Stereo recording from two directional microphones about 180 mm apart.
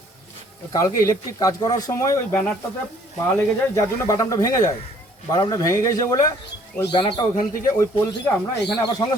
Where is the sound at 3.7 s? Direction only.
15° left (ahead or behind).